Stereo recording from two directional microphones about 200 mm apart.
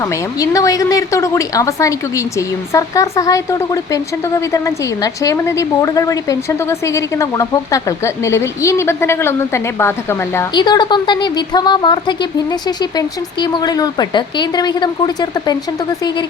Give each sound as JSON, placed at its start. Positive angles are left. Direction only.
{"t": 0.0, "sound": "a woman's voice", "side_deg": 15}